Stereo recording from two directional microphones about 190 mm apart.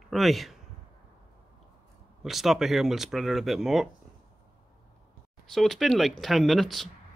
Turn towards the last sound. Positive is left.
turn(degrees=0)  # may be behind; listen again after turning